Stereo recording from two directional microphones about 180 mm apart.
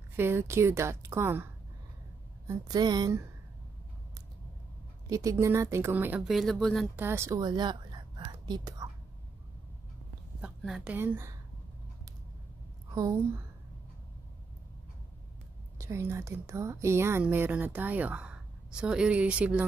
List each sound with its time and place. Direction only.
0.1 s speech: 15° right (ahead or behind)
5.1 s speech: 15° right (ahead or behind); by 6.9 s centre (ahead or behind)
7.0 s a woman's voice: 15° right (ahead or behind)
10.4 s a woman's voice: 5° right (ahead or behind)
12.9 s a woman's voice: 20° right (ahead or behind)
15.8 s speech: 15° right (ahead or behind)